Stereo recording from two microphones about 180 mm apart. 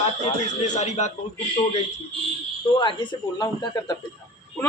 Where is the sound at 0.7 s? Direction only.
40° left (ahead or behind).